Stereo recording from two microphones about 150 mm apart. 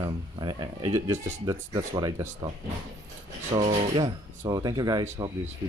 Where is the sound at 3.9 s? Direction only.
25° right (ahead or behind).